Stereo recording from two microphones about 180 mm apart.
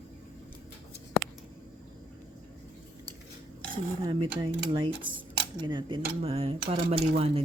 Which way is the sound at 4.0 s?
25° right (ahead or behind).